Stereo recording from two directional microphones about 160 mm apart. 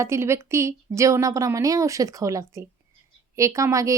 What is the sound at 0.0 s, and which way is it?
A woman's voice, 15° right (ahead or behind).